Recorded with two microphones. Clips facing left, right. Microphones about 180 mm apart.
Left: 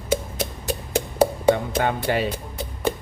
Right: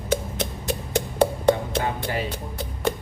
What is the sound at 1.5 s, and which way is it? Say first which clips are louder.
Music: left 3 dB; 75° left (ahead or behind).